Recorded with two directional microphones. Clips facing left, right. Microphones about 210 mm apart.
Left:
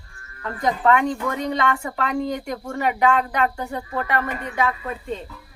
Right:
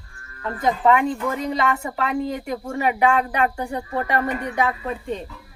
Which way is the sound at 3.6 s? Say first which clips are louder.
Right 2 dB; 30° right (ahead or behind).